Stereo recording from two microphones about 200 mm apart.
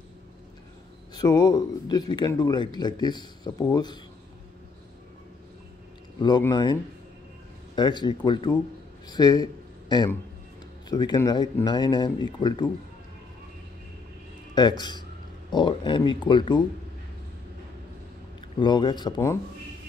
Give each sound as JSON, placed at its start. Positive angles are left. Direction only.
{"t": 1.1, "sound": "speech", "side_deg": 20}
{"t": 6.2, "sound": "speech", "side_deg": 20}
{"t": 14.5, "sound": "speech", "side_deg": 20}
{"t": 18.6, "sound": "speech", "side_deg": 25}